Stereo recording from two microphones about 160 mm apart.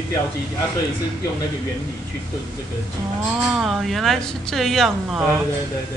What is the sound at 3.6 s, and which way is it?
A woman's voice, centre (ahead or behind).